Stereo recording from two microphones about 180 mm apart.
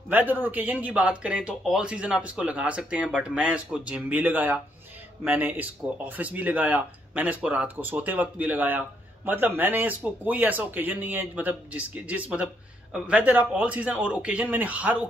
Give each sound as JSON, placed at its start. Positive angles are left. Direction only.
{"t": 0.1, "sound": "speech", "side_deg": -10}